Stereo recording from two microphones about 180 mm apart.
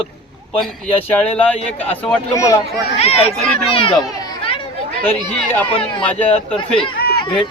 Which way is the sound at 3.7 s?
30° left (ahead or behind).